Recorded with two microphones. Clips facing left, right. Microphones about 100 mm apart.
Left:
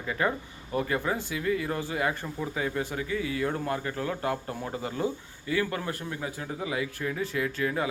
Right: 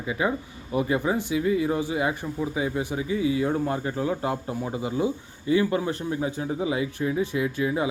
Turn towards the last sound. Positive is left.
turn(degrees=-15)  # may be behind; listen again after turning